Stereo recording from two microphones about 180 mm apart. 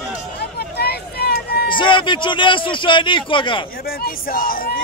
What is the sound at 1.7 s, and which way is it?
A man's voice, 25° left (ahead or behind).